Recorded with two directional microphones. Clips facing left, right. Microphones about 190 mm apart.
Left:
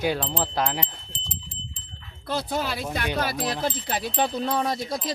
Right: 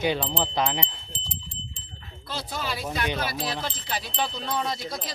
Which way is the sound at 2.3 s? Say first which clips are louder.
Left 5 dB; 55° left (ahead or behind).